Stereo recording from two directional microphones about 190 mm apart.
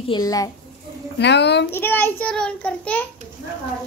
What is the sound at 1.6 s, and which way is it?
A child's voice, 10° left (ahead or behind).